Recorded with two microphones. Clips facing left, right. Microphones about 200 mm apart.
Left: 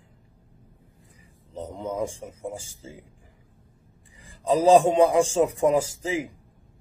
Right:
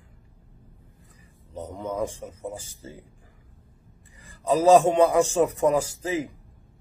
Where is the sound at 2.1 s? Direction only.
10° left (ahead or behind).